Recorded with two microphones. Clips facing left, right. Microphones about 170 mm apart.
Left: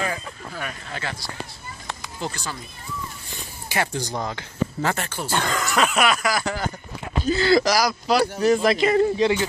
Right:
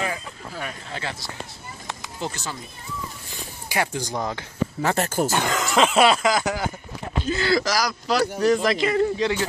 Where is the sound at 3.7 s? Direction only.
15° right (ahead or behind).